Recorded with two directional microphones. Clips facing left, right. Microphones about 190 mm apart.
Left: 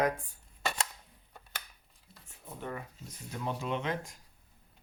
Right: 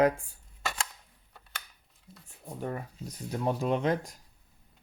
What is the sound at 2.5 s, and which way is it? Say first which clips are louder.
Speech: right 5 dB; 40° right (ahead or behind).